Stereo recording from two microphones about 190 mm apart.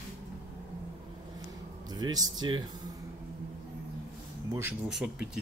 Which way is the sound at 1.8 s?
20° right (ahead or behind).